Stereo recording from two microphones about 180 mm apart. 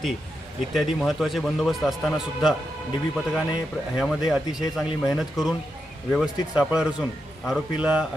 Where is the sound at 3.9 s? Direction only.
Centre (ahead or behind).